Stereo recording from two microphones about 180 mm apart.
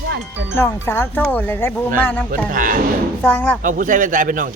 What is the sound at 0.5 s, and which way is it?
Speech, 10° left (ahead or behind).